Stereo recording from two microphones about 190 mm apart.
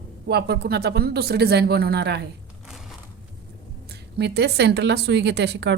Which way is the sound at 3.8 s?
60° right (ahead or behind).